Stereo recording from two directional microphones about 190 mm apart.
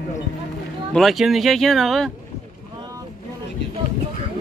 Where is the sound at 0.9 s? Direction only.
Centre (ahead or behind).